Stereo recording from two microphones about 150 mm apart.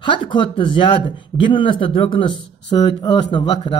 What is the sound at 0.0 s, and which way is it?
Speech, 30° left (ahead or behind).